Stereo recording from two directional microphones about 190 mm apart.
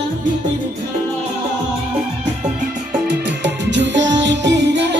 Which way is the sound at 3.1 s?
65° right (ahead or behind).